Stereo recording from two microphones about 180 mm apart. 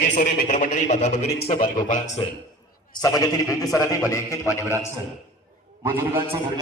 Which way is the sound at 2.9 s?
20° left (ahead or behind).